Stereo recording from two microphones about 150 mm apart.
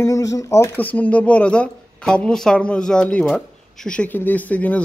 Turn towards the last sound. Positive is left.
turn(degrees=10)  # may be behind; listen again after turning